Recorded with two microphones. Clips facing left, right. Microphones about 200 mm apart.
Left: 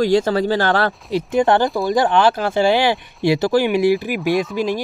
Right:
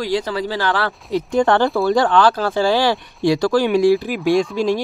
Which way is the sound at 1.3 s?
20° left (ahead or behind).